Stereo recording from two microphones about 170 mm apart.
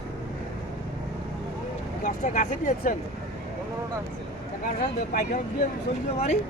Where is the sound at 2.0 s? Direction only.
50° left (ahead or behind).